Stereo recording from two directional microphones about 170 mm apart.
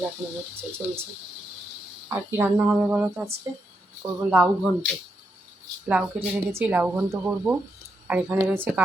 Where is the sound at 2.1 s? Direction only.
10° right (ahead or behind).